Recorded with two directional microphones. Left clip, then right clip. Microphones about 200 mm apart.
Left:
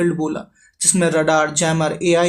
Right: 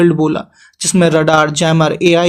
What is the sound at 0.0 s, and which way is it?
Speech, 30° right (ahead or behind).